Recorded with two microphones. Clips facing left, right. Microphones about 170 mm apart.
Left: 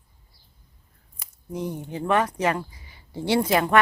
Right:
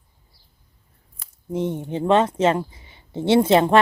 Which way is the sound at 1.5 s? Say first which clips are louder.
Right 6 dB; 25° right (ahead or behind).